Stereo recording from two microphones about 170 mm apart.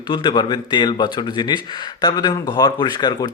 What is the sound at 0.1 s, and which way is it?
Speech, 25° left (ahead or behind).